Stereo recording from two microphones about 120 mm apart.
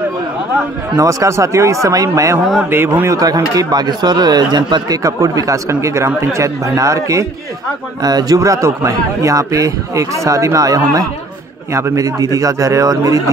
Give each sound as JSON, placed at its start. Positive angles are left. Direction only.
{"t": 0.9, "sound": "a man's voice", "side_deg": -25}
{"t": 3.2, "sound": "a man's voice", "side_deg": -30}